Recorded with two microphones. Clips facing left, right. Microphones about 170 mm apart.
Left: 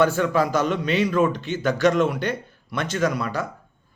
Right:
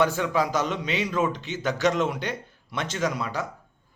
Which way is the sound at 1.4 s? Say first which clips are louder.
Left 5 dB; 55° left (ahead or behind).